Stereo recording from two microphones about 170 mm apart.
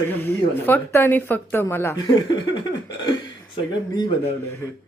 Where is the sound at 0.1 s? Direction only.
10° left (ahead or behind).